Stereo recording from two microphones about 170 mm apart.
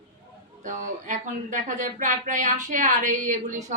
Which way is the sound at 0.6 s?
50° right (ahead or behind).